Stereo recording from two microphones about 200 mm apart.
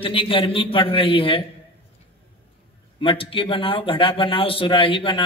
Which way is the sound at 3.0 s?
25° left (ahead or behind).